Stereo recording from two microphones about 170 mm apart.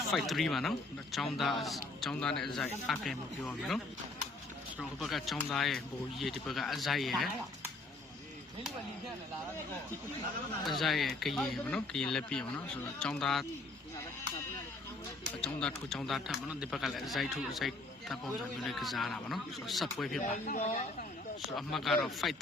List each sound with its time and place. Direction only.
0.1 s speech: centre (ahead or behind)
4.8 s speech: centre (ahead or behind)
10.7 s speech: centre (ahead or behind)
15.6 s speech: 5° left (ahead or behind)
20.1 s speech: 45° left (ahead or behind)
21.5 s speech: centre (ahead or behind)